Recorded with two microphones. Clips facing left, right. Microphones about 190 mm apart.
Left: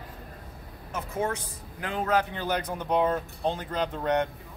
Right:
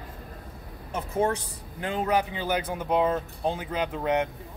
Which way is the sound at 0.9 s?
30° right (ahead or behind).